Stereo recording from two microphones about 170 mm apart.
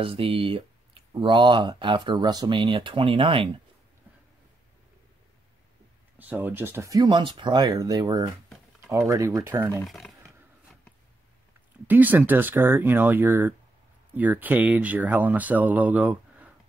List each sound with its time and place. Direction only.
0.0 s speech: 35° right (ahead or behind)
6.1 s speech: 10° right (ahead or behind)
9.8 s speech: centre (ahead or behind)
11.9 s speech: 10° right (ahead or behind)